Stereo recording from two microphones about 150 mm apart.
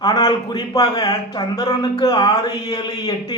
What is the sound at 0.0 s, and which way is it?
Speech, 25° left (ahead or behind).